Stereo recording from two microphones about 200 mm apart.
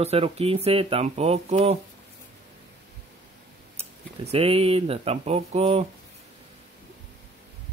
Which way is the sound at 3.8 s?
30° right (ahead or behind).